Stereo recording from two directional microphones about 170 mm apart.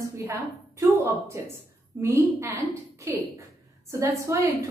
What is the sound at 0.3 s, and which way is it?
A woman's voice, 15° right (ahead or behind).